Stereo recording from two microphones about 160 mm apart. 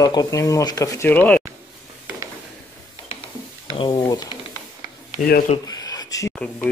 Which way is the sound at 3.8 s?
30° left (ahead or behind).